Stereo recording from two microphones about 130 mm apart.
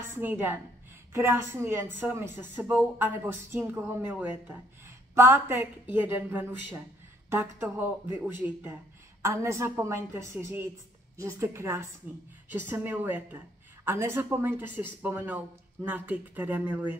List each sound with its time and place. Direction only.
0.0 s a woman's voice: 15° right (ahead or behind)